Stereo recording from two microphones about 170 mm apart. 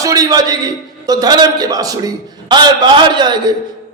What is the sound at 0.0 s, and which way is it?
A man's voice, 20° right (ahead or behind).